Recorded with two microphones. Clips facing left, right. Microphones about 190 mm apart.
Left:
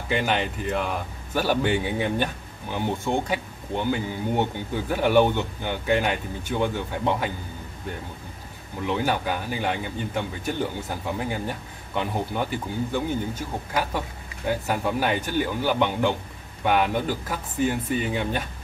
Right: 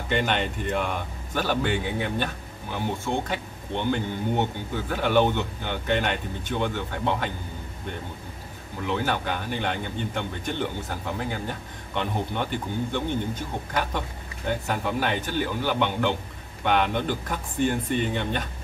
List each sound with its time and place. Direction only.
0.1 s speech: 5° left (ahead or behind)
8.8 s speech: 15° left (ahead or behind)